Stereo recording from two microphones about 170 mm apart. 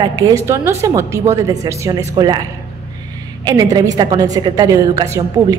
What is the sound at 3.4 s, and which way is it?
A woman's voice, 25° right (ahead or behind).